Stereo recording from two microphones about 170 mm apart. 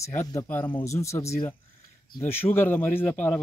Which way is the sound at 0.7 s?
25° left (ahead or behind).